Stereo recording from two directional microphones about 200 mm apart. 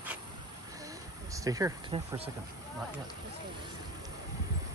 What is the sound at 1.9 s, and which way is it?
Speech, 25° right (ahead or behind).